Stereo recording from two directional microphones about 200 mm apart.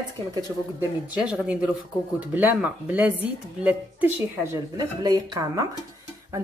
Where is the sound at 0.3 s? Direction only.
15° right (ahead or behind).